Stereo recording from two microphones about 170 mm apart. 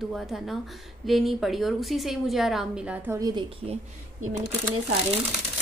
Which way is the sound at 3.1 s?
20° right (ahead or behind).